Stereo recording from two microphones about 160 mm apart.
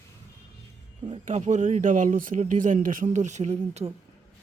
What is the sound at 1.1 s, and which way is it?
Speech, 45° right (ahead or behind).